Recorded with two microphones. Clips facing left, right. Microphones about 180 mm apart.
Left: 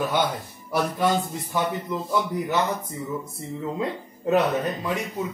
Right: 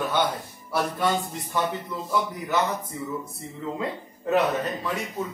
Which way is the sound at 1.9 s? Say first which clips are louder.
Left 4 dB; 20° left (ahead or behind).